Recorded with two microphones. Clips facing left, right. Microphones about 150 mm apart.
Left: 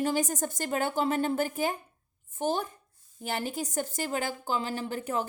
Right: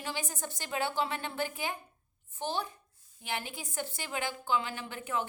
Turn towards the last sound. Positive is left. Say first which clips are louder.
# left 4 dB
turn(degrees=40)  # may be behind; listen again after turning